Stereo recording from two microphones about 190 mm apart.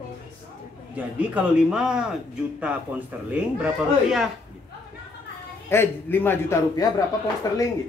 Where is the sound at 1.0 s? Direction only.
5° right (ahead or behind).